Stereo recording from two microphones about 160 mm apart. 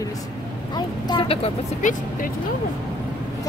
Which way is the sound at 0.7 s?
25° left (ahead or behind).